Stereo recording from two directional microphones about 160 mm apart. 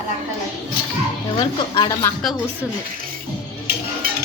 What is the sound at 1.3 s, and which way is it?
Speech, 25° left (ahead or behind).